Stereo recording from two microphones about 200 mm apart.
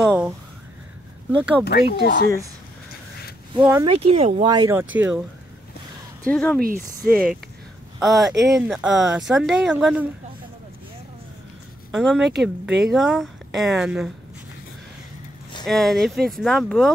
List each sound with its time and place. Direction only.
0.0 s speech: centre (ahead or behind)
1.6 s speech: 55° left (ahead or behind)
3.8 s speech: 25° right (ahead or behind); by 5.2 s 10° right (ahead or behind)
6.2 s speech: 5° left (ahead or behind)
6.6 s speech: 45° right (ahead or behind)
8.0 s speech: centre (ahead or behind)
11.9 s speech: centre (ahead or behind)
15.6 s speech: centre (ahead or behind)